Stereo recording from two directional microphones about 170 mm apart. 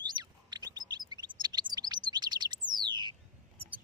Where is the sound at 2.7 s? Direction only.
25° right (ahead or behind).